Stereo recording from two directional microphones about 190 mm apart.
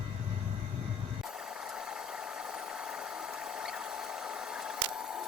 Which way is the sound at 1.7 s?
5° right (ahead or behind).